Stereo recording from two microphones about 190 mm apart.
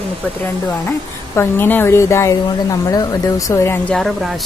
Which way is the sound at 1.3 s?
10° left (ahead or behind).